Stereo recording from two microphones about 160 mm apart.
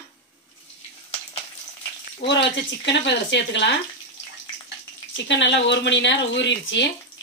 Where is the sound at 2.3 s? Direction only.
90° left.